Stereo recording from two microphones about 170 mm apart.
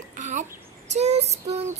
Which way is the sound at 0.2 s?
45° right (ahead or behind).